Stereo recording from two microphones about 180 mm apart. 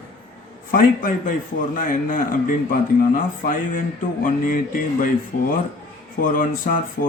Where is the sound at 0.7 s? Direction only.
50° left (ahead or behind).